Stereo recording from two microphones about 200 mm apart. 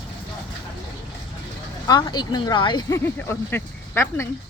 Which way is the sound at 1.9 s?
20° left (ahead or behind).